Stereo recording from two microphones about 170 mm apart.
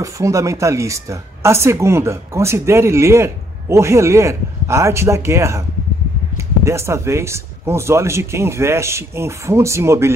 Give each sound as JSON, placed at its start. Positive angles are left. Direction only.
{"t": 0.0, "sound": "speech", "side_deg": -20}